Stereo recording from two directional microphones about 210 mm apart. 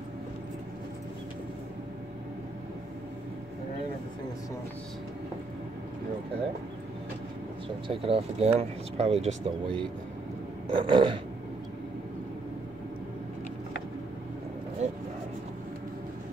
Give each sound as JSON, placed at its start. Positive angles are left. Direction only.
{"t": 7.9, "sound": "speech", "side_deg": -30}
{"t": 14.8, "sound": "vehicle", "side_deg": -30}